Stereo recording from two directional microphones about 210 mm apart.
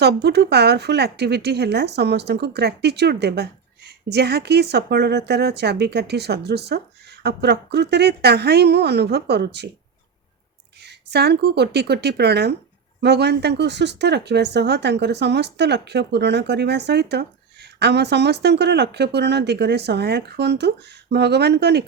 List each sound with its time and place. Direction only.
0.0 s speech: 50° right (ahead or behind)
10.8 s speech: 50° right (ahead or behind)